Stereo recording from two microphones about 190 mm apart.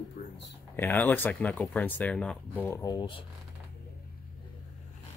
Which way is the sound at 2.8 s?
20° left (ahead or behind).